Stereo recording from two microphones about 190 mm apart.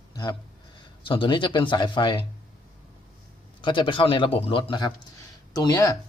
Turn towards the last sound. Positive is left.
turn(degrees=20)  # may be behind; listen again after turning